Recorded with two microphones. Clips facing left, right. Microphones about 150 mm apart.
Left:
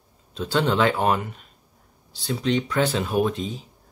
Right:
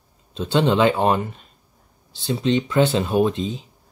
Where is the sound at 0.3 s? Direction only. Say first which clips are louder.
Right 4 dB; 25° right (ahead or behind).